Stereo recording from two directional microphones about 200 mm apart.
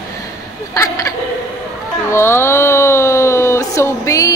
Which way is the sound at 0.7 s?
15° left (ahead or behind).